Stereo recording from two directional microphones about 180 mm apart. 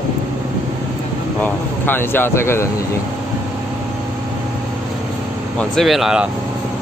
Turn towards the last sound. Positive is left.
turn(degrees=-5)  # may be behind; listen again after turning